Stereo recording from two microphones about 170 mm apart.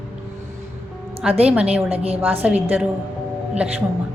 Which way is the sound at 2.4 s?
10° right (ahead or behind).